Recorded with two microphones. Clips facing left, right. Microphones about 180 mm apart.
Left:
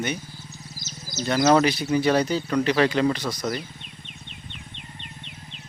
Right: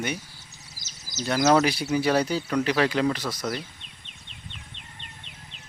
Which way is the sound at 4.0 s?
35° right (ahead or behind).